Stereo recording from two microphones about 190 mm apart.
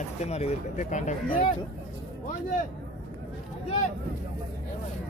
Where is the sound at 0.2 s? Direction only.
35° left (ahead or behind).